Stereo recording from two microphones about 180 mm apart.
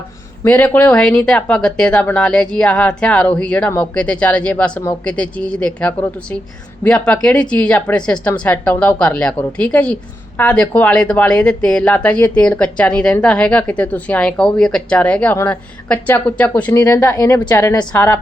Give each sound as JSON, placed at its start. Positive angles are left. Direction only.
{"t": 0.4, "sound": "a woman's voice", "side_deg": 10}
{"t": 16.8, "sound": "speech", "side_deg": 20}